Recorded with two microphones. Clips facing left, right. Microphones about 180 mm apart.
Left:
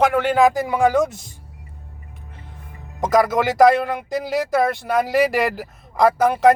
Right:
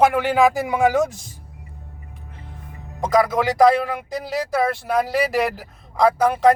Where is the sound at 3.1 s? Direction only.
Centre (ahead or behind).